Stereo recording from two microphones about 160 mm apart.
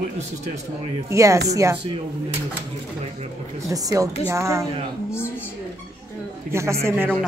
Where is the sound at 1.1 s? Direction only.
20° right (ahead or behind).